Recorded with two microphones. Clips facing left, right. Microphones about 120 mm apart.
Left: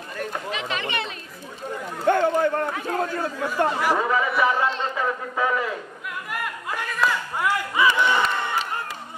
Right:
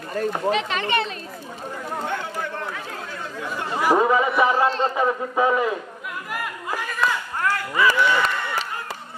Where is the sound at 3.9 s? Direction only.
20° right (ahead or behind).